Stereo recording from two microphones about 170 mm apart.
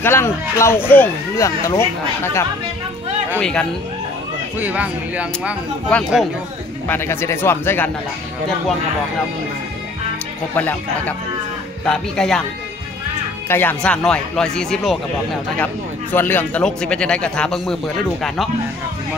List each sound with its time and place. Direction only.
0.0 s speech: 15° left (ahead or behind)
3.3 s a man's voice: 5° left (ahead or behind)
4.6 s speech: 10° right (ahead or behind)
5.9 s speech: 5° left (ahead or behind)
10.5 s a man's voice: 10° left (ahead or behind)
13.5 s a man's voice: 10° left (ahead or behind)